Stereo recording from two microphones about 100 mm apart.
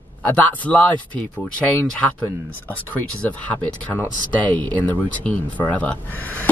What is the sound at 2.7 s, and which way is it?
Speech, 15° left (ahead or behind).